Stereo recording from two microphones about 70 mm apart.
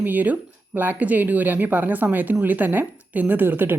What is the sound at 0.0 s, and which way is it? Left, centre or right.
A woman's voice, right.